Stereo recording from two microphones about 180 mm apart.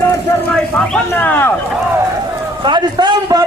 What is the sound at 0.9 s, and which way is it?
Speech, 10° left (ahead or behind).